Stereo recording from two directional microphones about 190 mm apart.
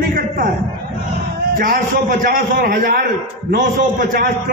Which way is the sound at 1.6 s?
45° right (ahead or behind).